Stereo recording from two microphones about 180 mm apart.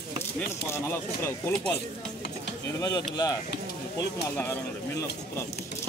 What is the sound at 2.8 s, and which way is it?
Speech, 20° left (ahead or behind).